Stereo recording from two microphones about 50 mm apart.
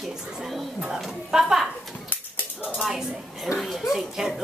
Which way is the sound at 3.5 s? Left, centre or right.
Centre.